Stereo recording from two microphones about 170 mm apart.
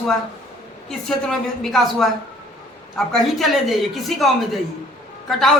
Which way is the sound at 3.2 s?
Centre (ahead or behind).